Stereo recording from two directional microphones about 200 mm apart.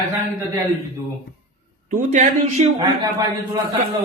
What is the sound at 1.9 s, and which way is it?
Speech, 40° right (ahead or behind).